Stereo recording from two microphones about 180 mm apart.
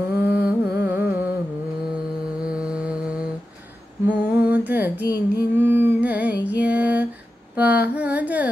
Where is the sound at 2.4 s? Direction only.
5° right (ahead or behind).